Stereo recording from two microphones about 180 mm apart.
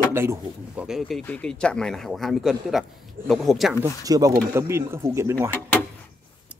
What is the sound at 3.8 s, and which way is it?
Speech, 20° right (ahead or behind).